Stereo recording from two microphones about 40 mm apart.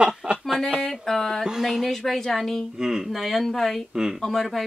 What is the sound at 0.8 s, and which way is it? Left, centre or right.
A woman's voice, centre.